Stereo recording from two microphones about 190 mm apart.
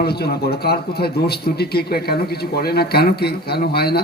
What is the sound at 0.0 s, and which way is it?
A man's voice, 55° left (ahead or behind).